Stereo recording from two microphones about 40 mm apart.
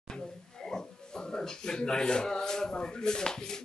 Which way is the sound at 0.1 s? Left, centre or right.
Centre.